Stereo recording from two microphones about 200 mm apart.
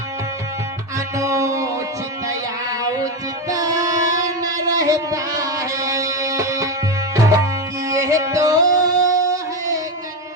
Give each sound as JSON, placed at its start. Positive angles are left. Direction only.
{"t": 0.9, "sound": "music", "side_deg": -15}
{"t": 3.5, "sound": "music", "side_deg": -15}